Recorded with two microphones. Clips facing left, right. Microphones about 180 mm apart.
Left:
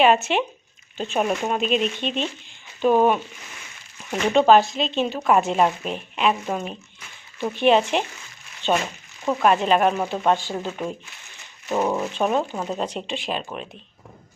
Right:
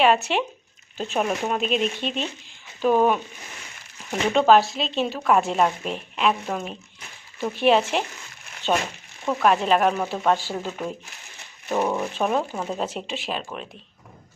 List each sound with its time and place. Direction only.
0.0 s speech: centre (ahead or behind)
4.3 s speech: centre (ahead or behind)